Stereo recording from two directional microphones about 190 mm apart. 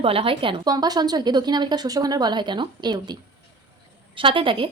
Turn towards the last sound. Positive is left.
turn(degrees=-25)  # may be behind; listen again after turning